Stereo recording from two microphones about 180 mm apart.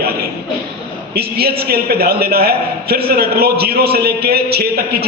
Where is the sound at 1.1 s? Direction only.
60° right (ahead or behind).